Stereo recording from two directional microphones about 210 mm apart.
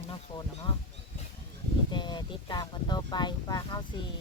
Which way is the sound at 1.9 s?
20° left (ahead or behind).